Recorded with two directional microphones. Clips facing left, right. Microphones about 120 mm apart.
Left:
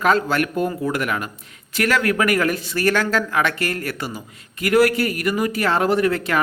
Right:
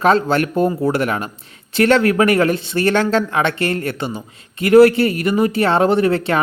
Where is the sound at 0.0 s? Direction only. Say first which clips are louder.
Right 4 dB; 30° right (ahead or behind).